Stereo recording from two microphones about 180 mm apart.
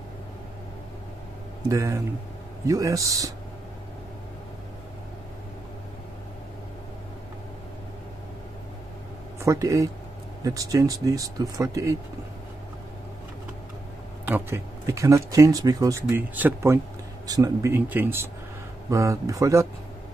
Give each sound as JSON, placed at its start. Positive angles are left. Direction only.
{"t": 1.7, "sound": "speech", "side_deg": -15}
{"t": 9.4, "sound": "speech", "side_deg": -15}
{"t": 14.2, "sound": "speech", "side_deg": -10}